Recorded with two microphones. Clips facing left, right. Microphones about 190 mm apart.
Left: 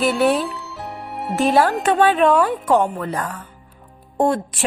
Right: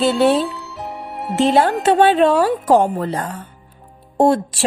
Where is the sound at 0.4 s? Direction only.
Centre (ahead or behind).